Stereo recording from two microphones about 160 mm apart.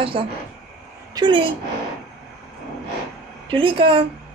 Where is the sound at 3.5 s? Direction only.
35° right (ahead or behind).